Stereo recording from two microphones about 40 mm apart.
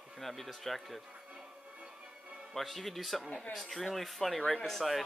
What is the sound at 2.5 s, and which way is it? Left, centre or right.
Speech, centre.